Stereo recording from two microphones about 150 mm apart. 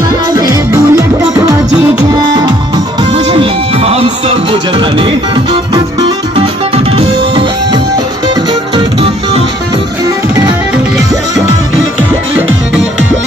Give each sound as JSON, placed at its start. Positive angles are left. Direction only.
{"t": 0.3, "sound": "music", "side_deg": -25}
{"t": 3.1, "sound": "music", "side_deg": -35}